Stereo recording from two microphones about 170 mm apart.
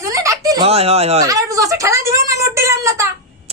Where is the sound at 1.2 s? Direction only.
20° right (ahead or behind).